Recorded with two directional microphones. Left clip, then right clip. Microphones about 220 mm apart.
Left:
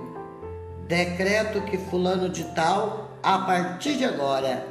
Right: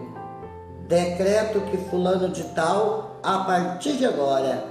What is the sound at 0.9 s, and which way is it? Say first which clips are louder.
Speech: right 3 dB; 25° left (ahead or behind).